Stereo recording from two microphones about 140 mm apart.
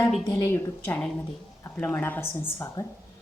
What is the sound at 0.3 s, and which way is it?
A woman's voice, 15° left (ahead or behind).